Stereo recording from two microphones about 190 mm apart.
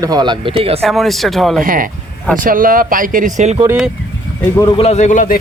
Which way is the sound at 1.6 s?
45° right (ahead or behind).